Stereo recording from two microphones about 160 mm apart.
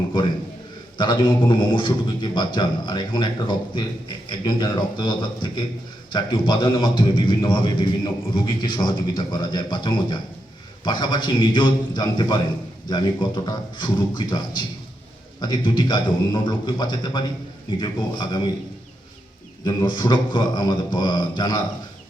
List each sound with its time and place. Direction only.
0.9 s a man's voice: 30° left (ahead or behind)
19.6 s a man's voice: 30° left (ahead or behind)